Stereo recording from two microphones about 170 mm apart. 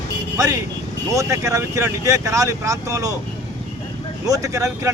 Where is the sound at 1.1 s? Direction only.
20° right (ahead or behind).